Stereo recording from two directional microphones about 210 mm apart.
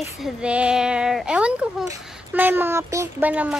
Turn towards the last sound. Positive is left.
turn(degrees=-5)  # may be behind; listen again after turning